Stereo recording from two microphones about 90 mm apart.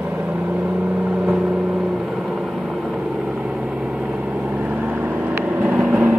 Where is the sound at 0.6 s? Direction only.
15° right (ahead or behind).